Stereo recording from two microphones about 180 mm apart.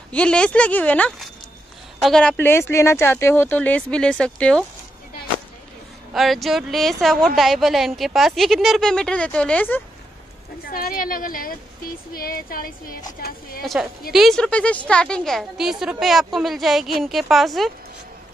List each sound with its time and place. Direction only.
0.1 s speech: 5° left (ahead or behind)
6.1 s a woman's voice: centre (ahead or behind)
10.7 s a woman's voice: 55° left (ahead or behind)
13.7 s a woman's voice: 5° right (ahead or behind)